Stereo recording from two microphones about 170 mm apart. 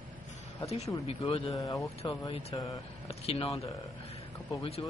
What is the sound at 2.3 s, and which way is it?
Speech, 35° left (ahead or behind).